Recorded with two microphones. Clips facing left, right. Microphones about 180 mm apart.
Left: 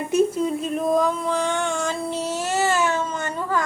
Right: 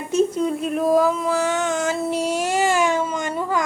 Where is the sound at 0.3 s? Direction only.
Centre (ahead or behind).